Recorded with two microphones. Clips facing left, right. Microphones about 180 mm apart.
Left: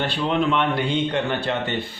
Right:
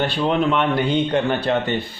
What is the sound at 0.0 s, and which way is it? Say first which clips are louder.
A man's voice: right 3 dB; 45° right (ahead or behind).